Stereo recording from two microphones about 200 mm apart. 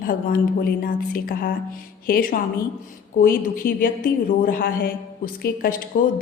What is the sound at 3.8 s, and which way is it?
Music, 45° left (ahead or behind).